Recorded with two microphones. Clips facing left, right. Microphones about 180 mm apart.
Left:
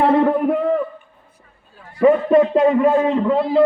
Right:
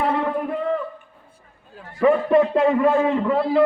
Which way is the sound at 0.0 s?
60° left (ahead or behind).